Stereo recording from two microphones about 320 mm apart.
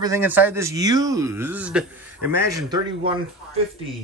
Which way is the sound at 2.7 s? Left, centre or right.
Centre.